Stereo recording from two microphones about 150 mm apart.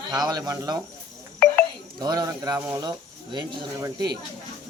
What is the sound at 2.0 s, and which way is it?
Speech, 25° right (ahead or behind).